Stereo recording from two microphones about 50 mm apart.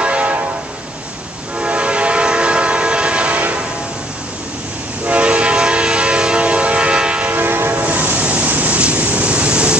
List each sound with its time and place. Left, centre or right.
0.0 s train: right
1.6 s train: right
5.0 s train: right
7.2 s train horn: right
7.8 s vehicle: right